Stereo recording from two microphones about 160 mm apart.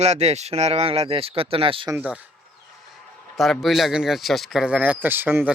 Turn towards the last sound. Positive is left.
turn(degrees=-15)  # may be behind; listen again after turning